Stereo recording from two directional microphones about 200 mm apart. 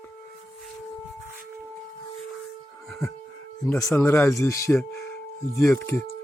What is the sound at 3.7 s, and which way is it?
Speech, 15° left (ahead or behind).